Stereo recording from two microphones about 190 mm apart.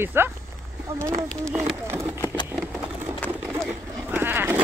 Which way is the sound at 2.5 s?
5° right (ahead or behind).